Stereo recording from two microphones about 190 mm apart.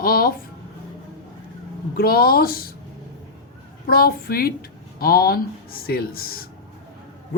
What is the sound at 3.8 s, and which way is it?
Speech, 50° left (ahead or behind).